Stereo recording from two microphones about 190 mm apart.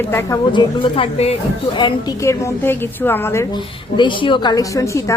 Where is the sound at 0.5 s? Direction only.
25° left (ahead or behind).